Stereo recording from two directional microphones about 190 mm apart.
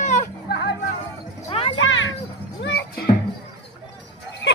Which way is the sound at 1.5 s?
30° left (ahead or behind).